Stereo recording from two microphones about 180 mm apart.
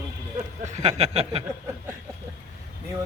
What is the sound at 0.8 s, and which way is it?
Speech, 35° right (ahead or behind).